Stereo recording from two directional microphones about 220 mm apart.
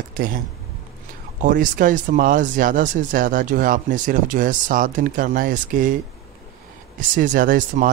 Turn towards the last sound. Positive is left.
turn(degrees=-40)  # may be behind; listen again after turning